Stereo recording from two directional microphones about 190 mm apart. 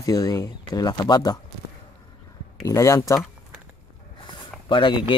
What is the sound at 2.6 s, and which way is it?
Speech, 15° left (ahead or behind).